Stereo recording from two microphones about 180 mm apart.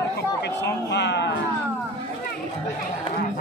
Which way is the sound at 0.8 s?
70° left (ahead or behind).